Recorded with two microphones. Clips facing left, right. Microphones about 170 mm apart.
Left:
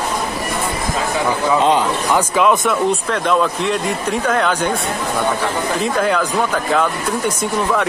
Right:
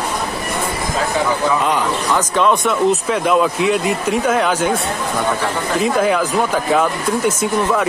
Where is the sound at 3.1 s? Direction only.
5° right (ahead or behind).